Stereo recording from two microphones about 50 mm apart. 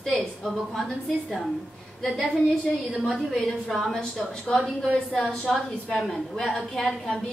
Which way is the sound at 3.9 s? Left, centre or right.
Centre.